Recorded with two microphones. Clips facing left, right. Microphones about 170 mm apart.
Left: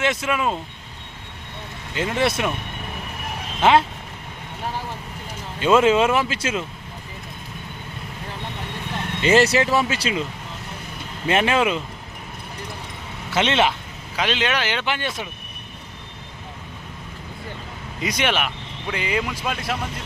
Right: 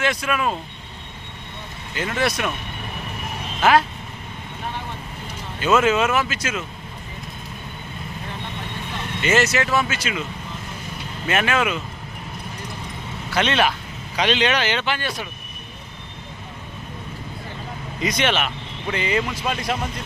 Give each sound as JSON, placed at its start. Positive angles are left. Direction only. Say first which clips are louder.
{"t": 0.0, "sound": "speech", "louder": "even", "side_deg": 20}
{"t": 2.1, "sound": "speech", "louder": "left 1 dB", "side_deg": 25}
{"t": 3.6, "sound": "speech", "louder": "left 1 dB", "side_deg": 25}
{"t": 5.5, "sound": "speech", "louder": "left 2 dB", "side_deg": 30}
{"t": 9.2, "sound": "speech", "louder": "left 3 dB", "side_deg": 35}
{"t": 11.3, "sound": "speech", "louder": "left 2 dB", "side_deg": 30}
{"t": 13.3, "sound": "speech", "louder": "left 1 dB", "side_deg": 25}
{"t": 14.2, "sound": "speech", "louder": "right 3 dB", "side_deg": 5}
{"t": 18.0, "sound": "speech", "louder": "right 1 dB", "side_deg": 10}